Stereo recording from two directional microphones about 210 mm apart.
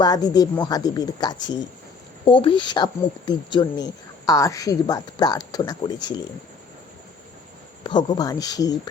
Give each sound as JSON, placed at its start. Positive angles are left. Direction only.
{"t": 0.0, "sound": "speech", "side_deg": 20}
{"t": 7.9, "sound": "speech", "side_deg": 20}